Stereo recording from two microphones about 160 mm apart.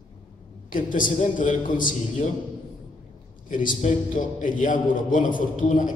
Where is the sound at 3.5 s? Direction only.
55° left (ahead or behind).